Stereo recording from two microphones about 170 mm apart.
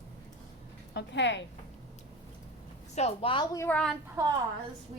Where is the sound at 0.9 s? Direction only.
90° left.